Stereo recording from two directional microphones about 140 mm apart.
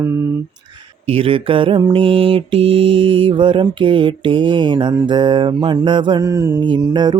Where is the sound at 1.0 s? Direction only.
40° right (ahead or behind); by 6.6 s 20° right (ahead or behind).